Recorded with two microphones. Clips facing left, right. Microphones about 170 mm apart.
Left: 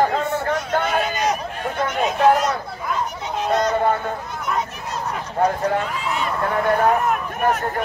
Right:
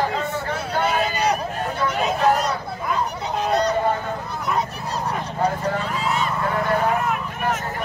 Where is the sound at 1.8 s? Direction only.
35° right (ahead or behind).